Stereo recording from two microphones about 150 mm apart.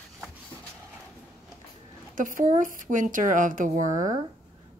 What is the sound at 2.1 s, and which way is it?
Speech, 65° right (ahead or behind).